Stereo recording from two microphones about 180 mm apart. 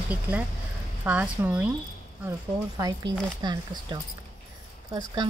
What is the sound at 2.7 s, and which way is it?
Speech, 20° right (ahead or behind).